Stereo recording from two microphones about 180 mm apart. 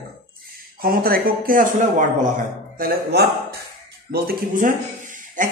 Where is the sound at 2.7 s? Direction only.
60° right (ahead or behind).